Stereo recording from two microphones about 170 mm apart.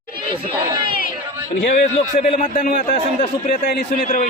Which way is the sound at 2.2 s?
45° left (ahead or behind).